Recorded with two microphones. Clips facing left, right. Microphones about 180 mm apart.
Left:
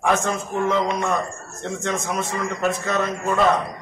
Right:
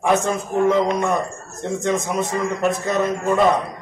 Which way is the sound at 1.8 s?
15° right (ahead or behind).